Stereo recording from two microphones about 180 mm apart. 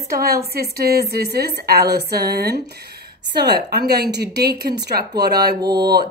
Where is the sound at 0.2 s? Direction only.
60° right (ahead or behind).